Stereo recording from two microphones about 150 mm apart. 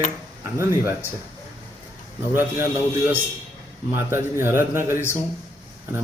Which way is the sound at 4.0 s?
15° right (ahead or behind).